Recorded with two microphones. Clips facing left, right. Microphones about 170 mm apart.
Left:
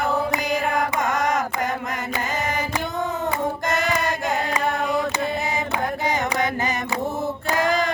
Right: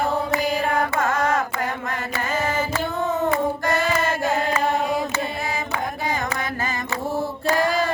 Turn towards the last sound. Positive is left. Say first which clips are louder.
# right 1 dB
turn(degrees=20)  # may be behind; listen again after turning